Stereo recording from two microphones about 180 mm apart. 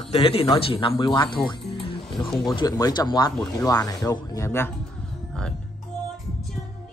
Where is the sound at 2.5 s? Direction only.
25° left (ahead or behind).